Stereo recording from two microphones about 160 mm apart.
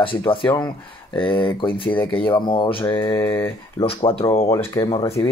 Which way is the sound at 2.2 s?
30° left (ahead or behind).